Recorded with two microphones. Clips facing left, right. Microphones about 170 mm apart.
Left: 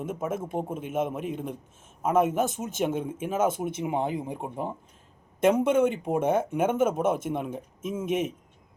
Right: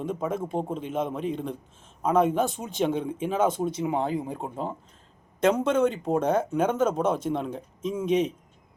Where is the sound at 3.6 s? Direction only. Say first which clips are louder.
Right 2 dB; 20° left (ahead or behind).